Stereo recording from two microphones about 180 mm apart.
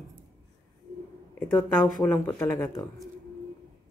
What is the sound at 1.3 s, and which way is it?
Speech, 10° left (ahead or behind).